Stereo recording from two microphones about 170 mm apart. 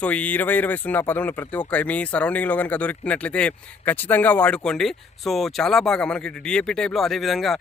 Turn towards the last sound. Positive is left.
turn(degrees=0)  # may be behind; listen again after turning